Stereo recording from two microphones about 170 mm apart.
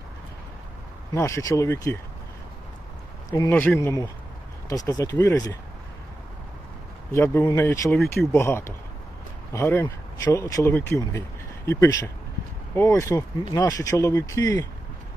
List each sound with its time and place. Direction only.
1.1 s speech: 15° left (ahead or behind)
3.3 s speech: 15° left (ahead or behind)
7.1 s speech: 15° left (ahead or behind)